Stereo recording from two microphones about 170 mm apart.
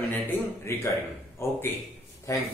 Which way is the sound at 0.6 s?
15° left (ahead or behind).